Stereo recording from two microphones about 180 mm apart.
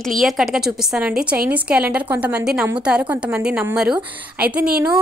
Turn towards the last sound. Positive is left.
turn(degrees=-10)  # may be behind; listen again after turning